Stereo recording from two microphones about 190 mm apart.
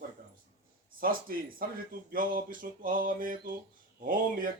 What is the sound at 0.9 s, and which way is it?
Speech, 50° right (ahead or behind).